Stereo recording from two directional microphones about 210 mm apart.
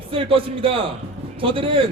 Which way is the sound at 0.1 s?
25° right (ahead or behind).